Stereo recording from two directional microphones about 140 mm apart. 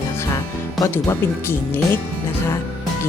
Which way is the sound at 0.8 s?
15° left (ahead or behind).